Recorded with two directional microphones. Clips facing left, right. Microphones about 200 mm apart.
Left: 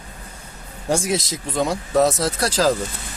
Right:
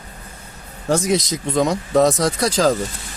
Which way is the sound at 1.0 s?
5° left (ahead or behind).